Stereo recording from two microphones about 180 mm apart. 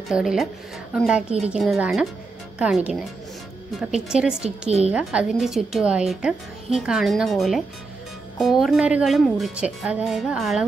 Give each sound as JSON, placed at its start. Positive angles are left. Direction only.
{"t": 0.1, "sound": "a woman's voice", "side_deg": 0}
{"t": 4.6, "sound": "a woman's voice", "side_deg": -35}
{"t": 4.9, "sound": "a woman's voice", "side_deg": -5}